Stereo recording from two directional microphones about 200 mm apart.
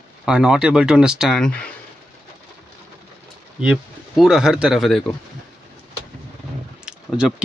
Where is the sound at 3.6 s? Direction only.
5° right (ahead or behind).